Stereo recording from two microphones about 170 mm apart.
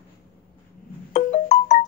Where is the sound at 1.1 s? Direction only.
40° left (ahead or behind).